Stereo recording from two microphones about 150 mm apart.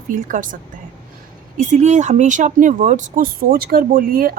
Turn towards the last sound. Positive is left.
turn(degrees=-70)  # may be behind; listen again after turning